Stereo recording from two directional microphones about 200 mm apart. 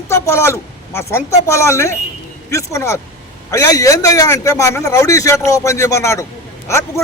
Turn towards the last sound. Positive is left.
turn(degrees=15)  # may be behind; listen again after turning